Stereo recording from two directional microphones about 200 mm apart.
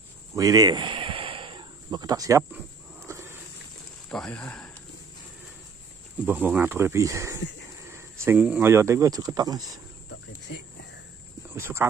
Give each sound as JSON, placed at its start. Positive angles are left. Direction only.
{"t": 0.4, "sound": "a sound", "side_deg": -20}
{"t": 4.1, "sound": "speech", "side_deg": 5}
{"t": 6.2, "sound": "speech", "side_deg": -10}
{"t": 10.0, "sound": "cricket", "side_deg": 60}
{"t": 11.5, "sound": "speech", "side_deg": -15}